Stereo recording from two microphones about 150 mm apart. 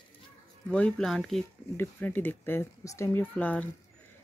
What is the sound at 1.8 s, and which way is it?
Speech, 10° left (ahead or behind).